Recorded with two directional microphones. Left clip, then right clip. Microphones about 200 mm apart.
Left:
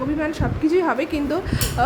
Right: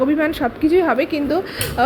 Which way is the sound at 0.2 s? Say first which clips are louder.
Right 5 dB; 15° right (ahead or behind).